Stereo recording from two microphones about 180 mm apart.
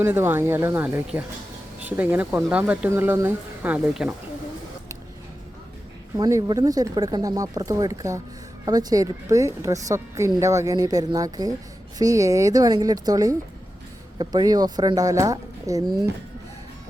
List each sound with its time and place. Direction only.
0.0 s speech: 10° right (ahead or behind)
6.1 s a woman's voice: 20° right (ahead or behind)